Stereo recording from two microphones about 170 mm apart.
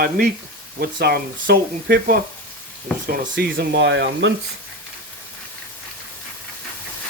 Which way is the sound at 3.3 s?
80° right.